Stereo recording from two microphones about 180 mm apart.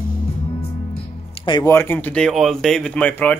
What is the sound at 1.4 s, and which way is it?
Music, 25° left (ahead or behind).